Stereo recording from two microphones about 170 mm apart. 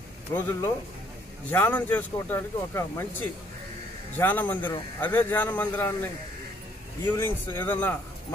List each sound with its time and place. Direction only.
0.3 s a man's voice: 20° left (ahead or behind)
4.2 s a man's voice: 10° left (ahead or behind)
7.1 s a man's voice: 10° left (ahead or behind)